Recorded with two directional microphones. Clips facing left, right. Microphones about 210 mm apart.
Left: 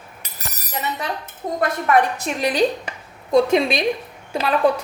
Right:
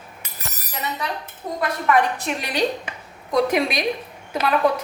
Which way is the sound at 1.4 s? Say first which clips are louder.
Left 2 dB; 45° left (ahead or behind).